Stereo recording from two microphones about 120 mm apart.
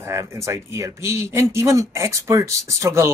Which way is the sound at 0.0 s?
25° right (ahead or behind).